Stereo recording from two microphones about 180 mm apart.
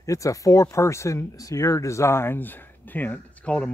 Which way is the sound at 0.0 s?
15° left (ahead or behind).